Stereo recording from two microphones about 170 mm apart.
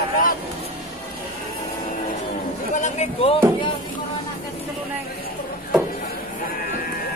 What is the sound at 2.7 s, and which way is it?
Speech, 45° left (ahead or behind).